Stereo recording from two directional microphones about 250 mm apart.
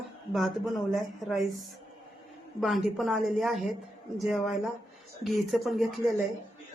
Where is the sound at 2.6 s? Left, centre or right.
Centre.